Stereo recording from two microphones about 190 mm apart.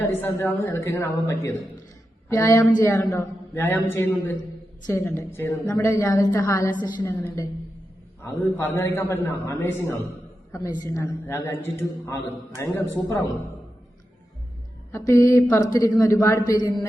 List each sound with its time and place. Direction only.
0.0 s a man's voice: 10° left (ahead or behind)
14.9 s a man's voice: 15° left (ahead or behind)